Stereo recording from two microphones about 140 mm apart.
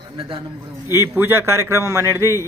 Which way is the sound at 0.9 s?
15° right (ahead or behind).